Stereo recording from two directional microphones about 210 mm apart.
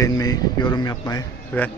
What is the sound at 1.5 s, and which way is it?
Speech, 10° left (ahead or behind).